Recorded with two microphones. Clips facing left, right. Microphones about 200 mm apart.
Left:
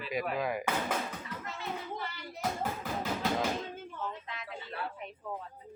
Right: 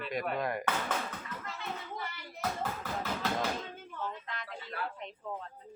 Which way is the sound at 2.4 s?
15° left (ahead or behind).